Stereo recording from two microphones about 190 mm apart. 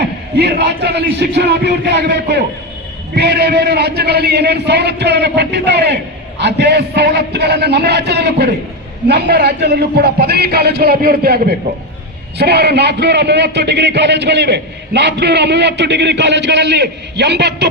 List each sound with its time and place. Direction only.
0.3 s a man's voice: 60° right (ahead or behind)